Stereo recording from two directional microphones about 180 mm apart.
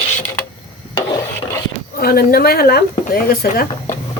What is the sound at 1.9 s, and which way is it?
Speech, 60° left (ahead or behind).